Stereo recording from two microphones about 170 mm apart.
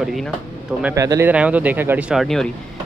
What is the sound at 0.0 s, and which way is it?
Speech, centre (ahead or behind).